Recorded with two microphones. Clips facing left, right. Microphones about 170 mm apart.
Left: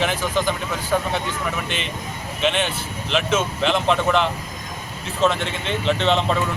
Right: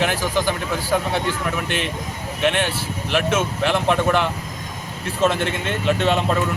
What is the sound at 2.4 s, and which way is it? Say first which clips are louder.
Speech: right 1 dB; 10° right (ahead or behind).